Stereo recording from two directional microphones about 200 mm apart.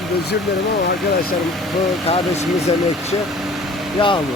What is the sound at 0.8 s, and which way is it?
Speech, 50° left (ahead or behind).